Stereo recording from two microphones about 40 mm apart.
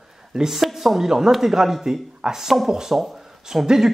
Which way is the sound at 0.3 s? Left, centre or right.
Centre.